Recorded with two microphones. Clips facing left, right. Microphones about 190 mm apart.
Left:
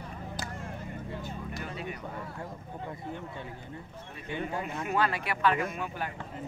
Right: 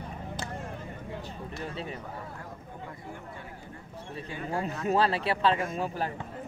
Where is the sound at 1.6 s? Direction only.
30° right (ahead or behind).